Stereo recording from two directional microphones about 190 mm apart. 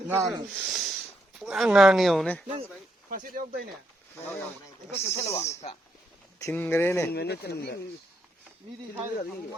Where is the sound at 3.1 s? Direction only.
45° right (ahead or behind).